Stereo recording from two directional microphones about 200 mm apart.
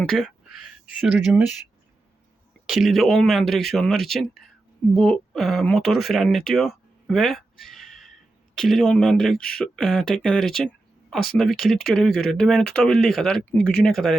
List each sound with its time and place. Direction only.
0.0 s speech: centre (ahead or behind)
2.6 s speech: centre (ahead or behind)